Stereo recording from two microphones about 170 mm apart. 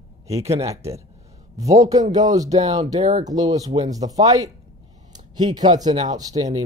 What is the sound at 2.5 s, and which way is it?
Speech, 40° right (ahead or behind).